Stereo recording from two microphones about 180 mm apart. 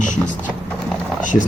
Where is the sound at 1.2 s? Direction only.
45° left (ahead or behind).